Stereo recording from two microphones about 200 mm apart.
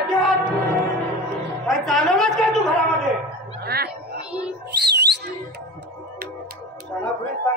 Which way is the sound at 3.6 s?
50° right (ahead or behind).